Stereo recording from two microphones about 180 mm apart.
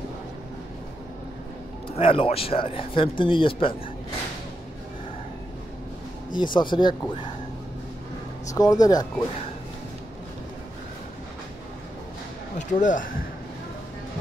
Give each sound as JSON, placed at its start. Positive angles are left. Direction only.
{"t": 2.0, "sound": "speech", "side_deg": 30}
{"t": 6.3, "sound": "speech", "side_deg": 25}
{"t": 8.5, "sound": "speech", "side_deg": 20}
{"t": 12.5, "sound": "speech", "side_deg": 45}